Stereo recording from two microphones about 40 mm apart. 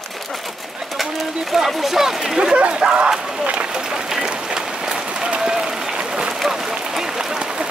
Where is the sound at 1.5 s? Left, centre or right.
Centre.